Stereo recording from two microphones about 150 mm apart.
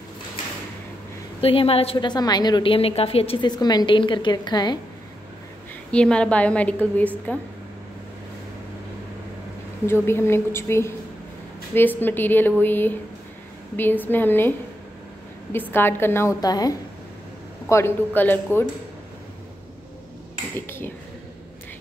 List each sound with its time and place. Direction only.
1.4 s a woman's voice: 40° left (ahead or behind)
3.4 s a woman's voice: 25° left (ahead or behind)
5.9 s a woman's voice: 5° left (ahead or behind)
10.0 s a woman's voice: 15° left (ahead or behind)
15.5 s a woman's voice: 15° left (ahead or behind)
20.5 s a woman's voice: 15° left (ahead or behind)